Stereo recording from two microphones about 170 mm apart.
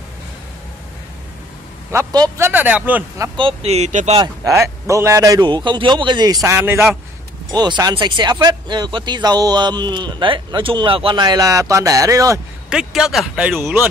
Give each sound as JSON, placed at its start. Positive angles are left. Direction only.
{"t": 1.9, "sound": "a man's voice", "side_deg": -20}
{"t": 3.3, "sound": "speech", "side_deg": -35}
{"t": 4.2, "sound": "speech", "side_deg": -20}
{"t": 7.5, "sound": "speech", "side_deg": -25}
{"t": 12.6, "sound": "a man's voice", "side_deg": -5}